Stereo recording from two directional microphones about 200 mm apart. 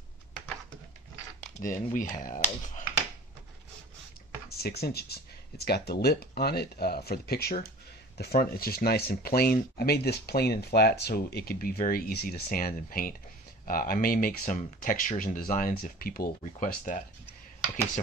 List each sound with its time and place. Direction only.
1.6 s speech: 40° left (ahead or behind)
4.5 s speech: 50° left (ahead or behind)